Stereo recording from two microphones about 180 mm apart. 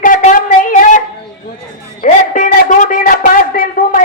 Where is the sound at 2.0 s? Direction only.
50° left (ahead or behind).